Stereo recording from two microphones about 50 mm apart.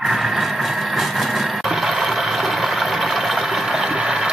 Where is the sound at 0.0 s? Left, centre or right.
Centre.